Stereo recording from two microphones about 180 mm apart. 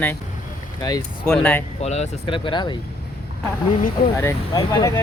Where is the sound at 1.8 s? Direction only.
35° left (ahead or behind).